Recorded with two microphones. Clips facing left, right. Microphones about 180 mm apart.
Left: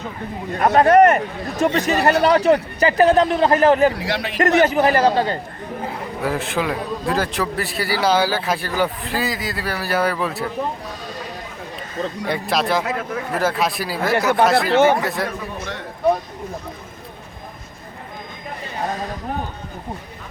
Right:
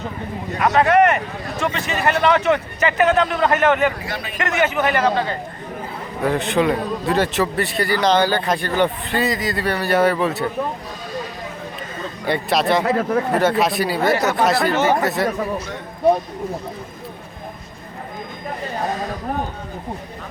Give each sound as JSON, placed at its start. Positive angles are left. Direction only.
{"t": 0.7, "sound": "a man's voice", "side_deg": 40}
{"t": 3.9, "sound": "a man's voice", "side_deg": 75}
{"t": 4.4, "sound": "a man's voice", "side_deg": 35}
{"t": 6.2, "sound": "a man's voice", "side_deg": 0}
{"t": 12.2, "sound": "a man's voice", "side_deg": 0}
{"t": 12.8, "sound": "speech", "side_deg": -35}
{"t": 13.3, "sound": "a man's voice", "side_deg": 0}
{"t": 14.5, "sound": "speech", "side_deg": 55}
{"t": 15.2, "sound": "a man's voice", "side_deg": 0}